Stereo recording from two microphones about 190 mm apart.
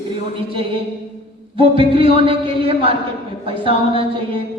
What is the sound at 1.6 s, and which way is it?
Music, 30° right (ahead or behind).